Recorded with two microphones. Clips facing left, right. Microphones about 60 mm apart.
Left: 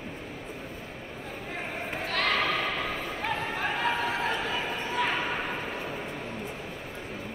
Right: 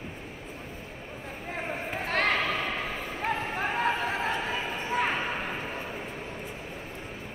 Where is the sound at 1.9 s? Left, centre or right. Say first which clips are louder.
Right 2 dB; right.